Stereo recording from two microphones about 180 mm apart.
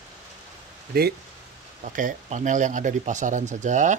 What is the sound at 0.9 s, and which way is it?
Speech, 55° right (ahead or behind).